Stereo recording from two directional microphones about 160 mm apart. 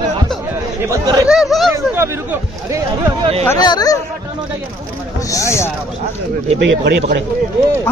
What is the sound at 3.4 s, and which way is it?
Speech, 25° left (ahead or behind).